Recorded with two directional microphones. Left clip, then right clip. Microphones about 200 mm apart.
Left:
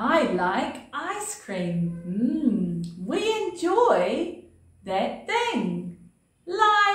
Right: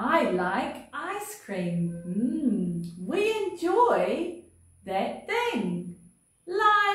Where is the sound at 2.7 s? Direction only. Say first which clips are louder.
Even; 20° left (ahead or behind).